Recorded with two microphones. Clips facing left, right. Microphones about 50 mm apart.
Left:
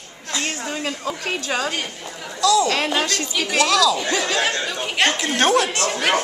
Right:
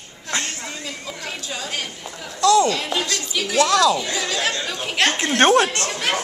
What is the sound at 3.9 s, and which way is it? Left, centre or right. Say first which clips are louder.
Speech: left 3 dB; left.